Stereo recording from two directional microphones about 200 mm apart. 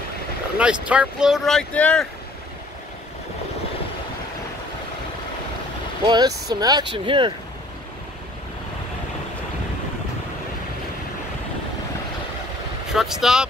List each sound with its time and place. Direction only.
0.6 s speech: 5° right (ahead or behind)
6.0 s speech: 20° right (ahead or behind)
12.9 s speech: centre (ahead or behind)